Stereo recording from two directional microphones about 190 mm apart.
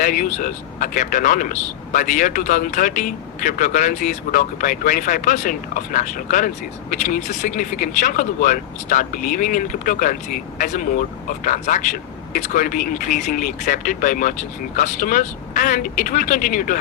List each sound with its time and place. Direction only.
0.0 s speech: 45° left (ahead or behind)